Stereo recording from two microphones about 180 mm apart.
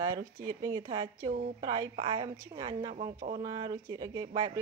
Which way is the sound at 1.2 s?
45° right (ahead or behind).